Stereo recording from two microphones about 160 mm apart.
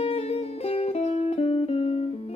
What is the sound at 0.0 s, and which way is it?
Music, 40° left (ahead or behind).